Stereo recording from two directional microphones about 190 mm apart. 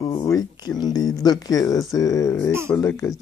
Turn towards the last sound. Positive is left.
turn(degrees=15)  # may be behind; listen again after turning